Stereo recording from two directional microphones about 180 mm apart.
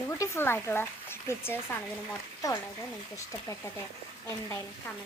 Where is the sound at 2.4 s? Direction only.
20° left (ahead or behind).